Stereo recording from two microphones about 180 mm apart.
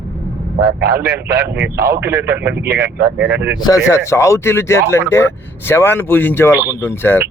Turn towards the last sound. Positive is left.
turn(degrees=10)  # may be behind; listen again after turning